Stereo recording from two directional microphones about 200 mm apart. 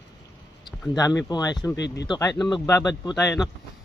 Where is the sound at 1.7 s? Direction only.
60° left (ahead or behind).